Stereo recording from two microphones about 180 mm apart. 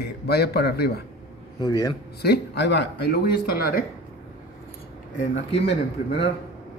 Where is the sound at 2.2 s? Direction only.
65° left (ahead or behind).